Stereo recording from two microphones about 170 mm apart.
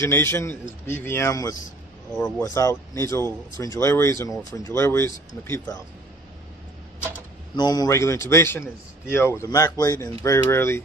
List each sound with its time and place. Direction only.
0.0 s speech: 15° left (ahead or behind)
7.5 s speech: 25° left (ahead or behind)